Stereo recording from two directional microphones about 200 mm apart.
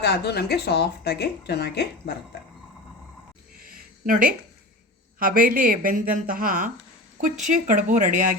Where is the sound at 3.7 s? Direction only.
45° right (ahead or behind).